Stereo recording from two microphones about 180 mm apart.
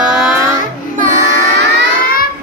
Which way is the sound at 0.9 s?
45° right (ahead or behind).